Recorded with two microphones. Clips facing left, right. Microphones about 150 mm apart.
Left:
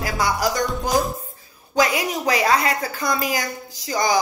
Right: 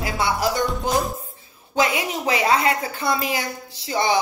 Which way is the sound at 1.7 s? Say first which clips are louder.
Left 1 dB; 25° right (ahead or behind).